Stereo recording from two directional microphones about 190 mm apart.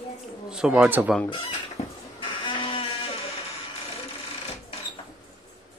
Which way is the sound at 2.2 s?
25° left (ahead or behind).